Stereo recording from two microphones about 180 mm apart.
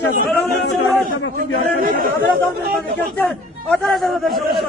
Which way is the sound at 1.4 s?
50° right (ahead or behind).